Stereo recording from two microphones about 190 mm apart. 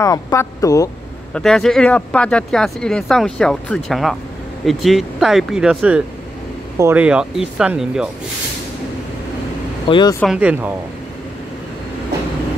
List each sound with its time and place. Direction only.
0.0 s speech: 15° left (ahead or behind)
1.3 s speech: 5° left (ahead or behind)
9.8 s speech: 25° left (ahead or behind)
10.2 s speech: 5° right (ahead or behind)